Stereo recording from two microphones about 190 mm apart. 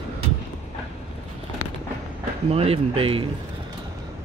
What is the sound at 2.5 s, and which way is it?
Speech, 30° right (ahead or behind).